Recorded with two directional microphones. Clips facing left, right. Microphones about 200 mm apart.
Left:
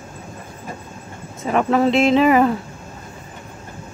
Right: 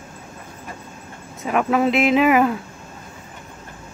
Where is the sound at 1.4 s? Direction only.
5° right (ahead or behind).